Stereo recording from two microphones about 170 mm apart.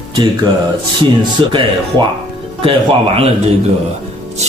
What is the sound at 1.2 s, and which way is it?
Speech, 25° right (ahead or behind).